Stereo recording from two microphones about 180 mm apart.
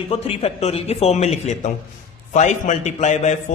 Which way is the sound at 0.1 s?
35° left (ahead or behind).